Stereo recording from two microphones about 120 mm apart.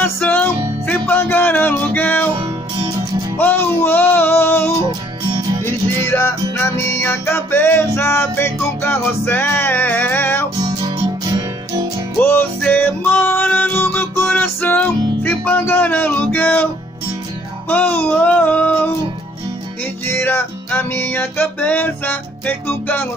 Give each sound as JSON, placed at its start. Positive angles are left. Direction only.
{"t": 0.0, "sound": "music", "side_deg": 15}
{"t": 2.3, "sound": "music", "side_deg": -45}
{"t": 3.3, "sound": "music", "side_deg": 15}
{"t": 10.6, "sound": "music", "side_deg": -40}
{"t": 12.2, "sound": "music", "side_deg": 15}
{"t": 17.6, "sound": "music", "side_deg": 15}